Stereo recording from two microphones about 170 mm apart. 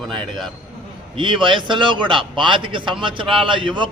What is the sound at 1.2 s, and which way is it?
A man's voice, 30° right (ahead or behind).